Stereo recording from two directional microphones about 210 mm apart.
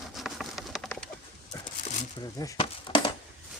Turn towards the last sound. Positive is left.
turn(degrees=25)  # may be behind; listen again after turning